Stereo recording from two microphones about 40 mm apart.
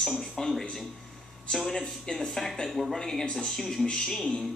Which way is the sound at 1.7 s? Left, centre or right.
Centre.